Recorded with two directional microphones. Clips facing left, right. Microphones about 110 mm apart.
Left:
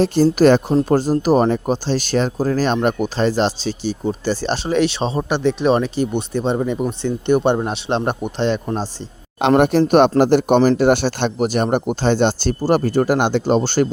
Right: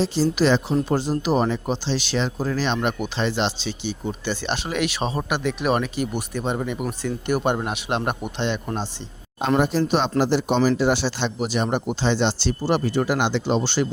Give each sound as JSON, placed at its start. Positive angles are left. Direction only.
{"t": 0.0, "sound": "speech", "side_deg": 55}
{"t": 9.6, "sound": "speech", "side_deg": 60}